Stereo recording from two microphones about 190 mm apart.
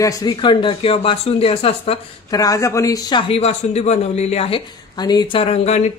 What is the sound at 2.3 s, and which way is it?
Speech, 20° left (ahead or behind).